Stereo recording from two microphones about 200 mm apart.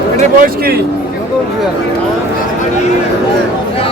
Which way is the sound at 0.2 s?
45° right (ahead or behind).